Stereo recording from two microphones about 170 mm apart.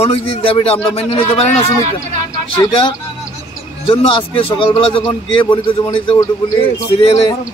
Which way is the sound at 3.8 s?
30° left (ahead or behind).